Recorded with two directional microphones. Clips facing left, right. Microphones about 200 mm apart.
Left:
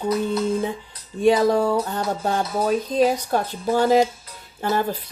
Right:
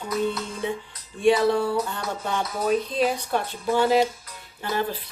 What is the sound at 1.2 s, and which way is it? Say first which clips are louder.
Speech: left 3 dB; 40° left (ahead or behind).